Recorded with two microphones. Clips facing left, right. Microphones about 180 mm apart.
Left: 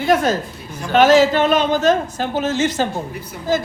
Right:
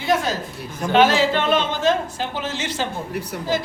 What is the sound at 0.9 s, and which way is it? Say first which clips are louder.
Speech: left 4 dB; 45° left (ahead or behind).